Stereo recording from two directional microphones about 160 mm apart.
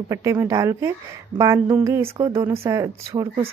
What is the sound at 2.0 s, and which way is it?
Speech, 25° right (ahead or behind).